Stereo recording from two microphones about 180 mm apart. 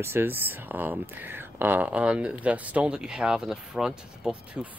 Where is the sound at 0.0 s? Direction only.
15° right (ahead or behind).